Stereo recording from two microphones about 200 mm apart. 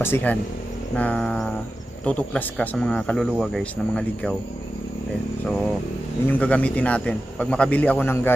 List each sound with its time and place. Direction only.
0.0 s speech: 10° left (ahead or behind)
6.2 s speech: 5° left (ahead or behind)